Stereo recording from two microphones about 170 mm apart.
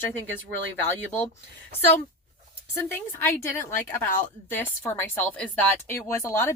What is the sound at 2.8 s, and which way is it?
A woman's voice, 15° left (ahead or behind).